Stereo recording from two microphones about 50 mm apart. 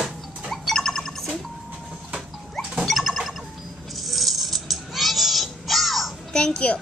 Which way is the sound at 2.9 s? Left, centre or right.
Centre.